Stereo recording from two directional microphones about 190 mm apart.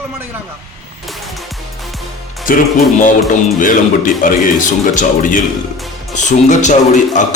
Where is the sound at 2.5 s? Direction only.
45° left (ahead or behind).